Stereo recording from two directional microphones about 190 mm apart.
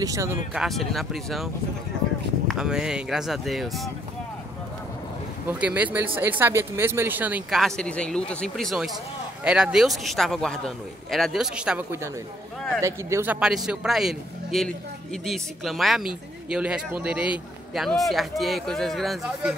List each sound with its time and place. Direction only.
0.0 s speech: 15° right (ahead or behind)
0.6 s a man's voice: centre (ahead or behind)
5.5 s a man's voice: 10° right (ahead or behind)